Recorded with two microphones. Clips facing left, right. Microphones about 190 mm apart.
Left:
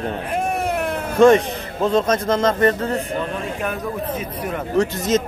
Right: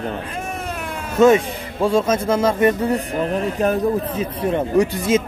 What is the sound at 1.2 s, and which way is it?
A man's voice, 10° right (ahead or behind).